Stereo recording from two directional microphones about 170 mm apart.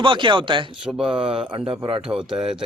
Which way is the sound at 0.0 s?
30° right (ahead or behind).